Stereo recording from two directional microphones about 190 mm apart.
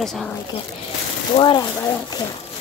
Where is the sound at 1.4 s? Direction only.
20° left (ahead or behind).